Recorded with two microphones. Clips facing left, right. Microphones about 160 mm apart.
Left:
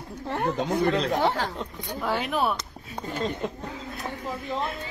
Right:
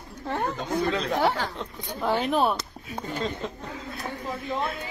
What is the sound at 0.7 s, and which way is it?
Speech, centre (ahead or behind).